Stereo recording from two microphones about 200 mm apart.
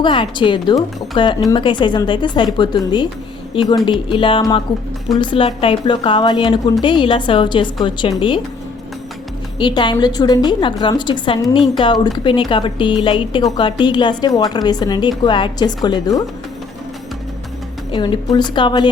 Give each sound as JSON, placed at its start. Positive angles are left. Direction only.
{"t": 0.0, "sound": "a woman's voice", "side_deg": 25}
{"t": 9.6, "sound": "a woman's voice", "side_deg": 25}
{"t": 17.9, "sound": "a woman's voice", "side_deg": 20}